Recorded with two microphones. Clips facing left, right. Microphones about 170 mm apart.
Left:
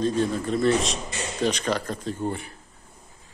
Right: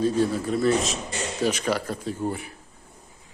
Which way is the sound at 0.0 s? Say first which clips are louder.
Right 1 dB; 10° right (ahead or behind).